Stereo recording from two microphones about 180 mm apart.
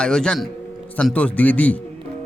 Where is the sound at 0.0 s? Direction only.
5° left (ahead or behind).